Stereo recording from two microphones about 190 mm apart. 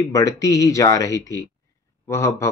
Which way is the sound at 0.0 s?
15° left (ahead or behind).